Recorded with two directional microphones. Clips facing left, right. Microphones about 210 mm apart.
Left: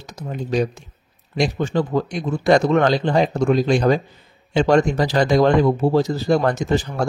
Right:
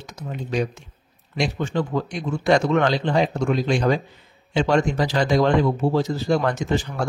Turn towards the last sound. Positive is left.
turn(degrees=40)  # may be behind; listen again after turning